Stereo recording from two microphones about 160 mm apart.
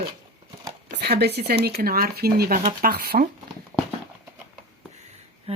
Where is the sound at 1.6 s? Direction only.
70° right (ahead or behind).